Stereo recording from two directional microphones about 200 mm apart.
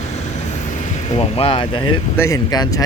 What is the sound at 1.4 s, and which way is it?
Speech, 25° left (ahead or behind).